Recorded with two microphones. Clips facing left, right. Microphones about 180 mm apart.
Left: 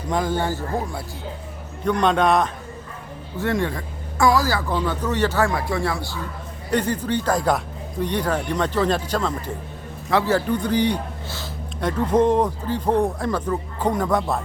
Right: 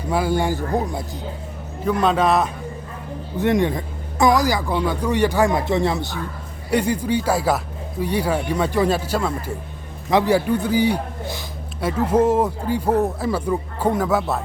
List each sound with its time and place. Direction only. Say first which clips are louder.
0.1 s a man's voice: right 2 dB; 10° right (ahead or behind)
1.8 s a man's voice: even; 5° right (ahead or behind)
3.3 s a man's voice: right 4 dB; 20° right (ahead or behind)
6.7 s a man's voice: right 2 dB; 10° right (ahead or behind)